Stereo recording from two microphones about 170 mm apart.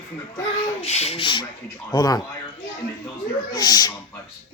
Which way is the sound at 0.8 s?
40° left (ahead or behind).